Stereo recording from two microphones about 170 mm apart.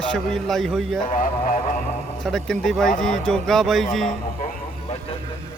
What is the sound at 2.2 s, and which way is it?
Speech, centre (ahead or behind).